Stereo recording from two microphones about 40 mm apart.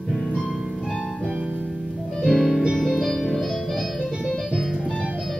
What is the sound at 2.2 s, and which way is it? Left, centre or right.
Music, centre.